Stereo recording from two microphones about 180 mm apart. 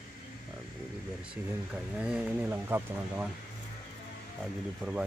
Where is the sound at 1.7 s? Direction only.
5° right (ahead or behind).